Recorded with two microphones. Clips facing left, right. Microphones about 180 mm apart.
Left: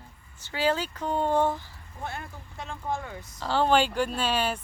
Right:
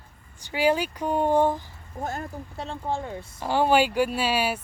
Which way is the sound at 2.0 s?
40° right (ahead or behind).